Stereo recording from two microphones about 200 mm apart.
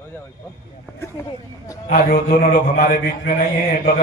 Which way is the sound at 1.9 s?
45° left (ahead or behind).